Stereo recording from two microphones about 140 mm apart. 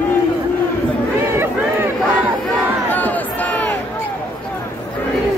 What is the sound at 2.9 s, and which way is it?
Crowd, 10° left (ahead or behind).